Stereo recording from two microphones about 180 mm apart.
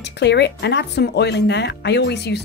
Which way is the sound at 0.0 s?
70° left (ahead or behind).